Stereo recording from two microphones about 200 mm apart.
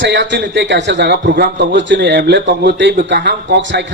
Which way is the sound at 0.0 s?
60° right (ahead or behind).